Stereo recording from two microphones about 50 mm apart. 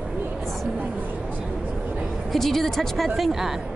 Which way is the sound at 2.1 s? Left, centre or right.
Centre.